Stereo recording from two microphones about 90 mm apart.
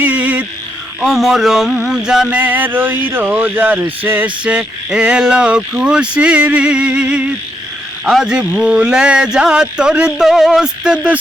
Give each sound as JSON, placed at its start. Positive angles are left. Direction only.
{"t": 0.0, "sound": "frog", "side_deg": -15}
{"t": 1.0, "sound": "a sound", "side_deg": -5}
{"t": 2.4, "sound": "speech", "side_deg": -20}